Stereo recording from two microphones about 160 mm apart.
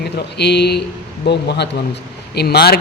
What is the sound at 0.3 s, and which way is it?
A man's voice, 90° left.